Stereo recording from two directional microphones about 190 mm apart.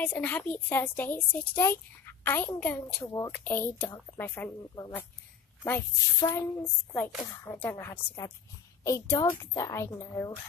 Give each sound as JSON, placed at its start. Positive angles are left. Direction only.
{"t": 0.0, "sound": "a woman's voice", "side_deg": 5}
{"t": 7.4, "sound": "a woman's voice", "side_deg": 10}